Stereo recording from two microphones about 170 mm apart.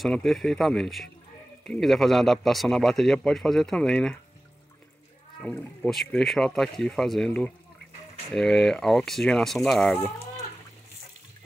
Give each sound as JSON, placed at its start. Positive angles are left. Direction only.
{"t": 0.0, "sound": "a man's voice", "side_deg": 0}
{"t": 5.4, "sound": "a man's voice", "side_deg": 10}